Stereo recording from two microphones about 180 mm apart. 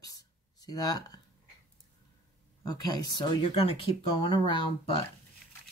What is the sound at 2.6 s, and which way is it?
Speech, 20° left (ahead or behind).